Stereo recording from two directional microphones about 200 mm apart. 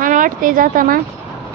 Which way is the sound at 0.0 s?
40° right (ahead or behind).